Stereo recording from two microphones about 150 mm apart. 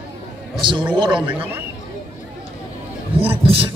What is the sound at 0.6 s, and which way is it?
Speech, 30° right (ahead or behind).